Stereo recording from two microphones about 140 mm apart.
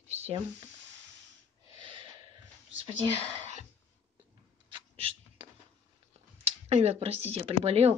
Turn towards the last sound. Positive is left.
turn(degrees=-45)  # may be behind; listen again after turning